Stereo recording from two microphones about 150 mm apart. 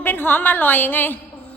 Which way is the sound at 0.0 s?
15° left (ahead or behind).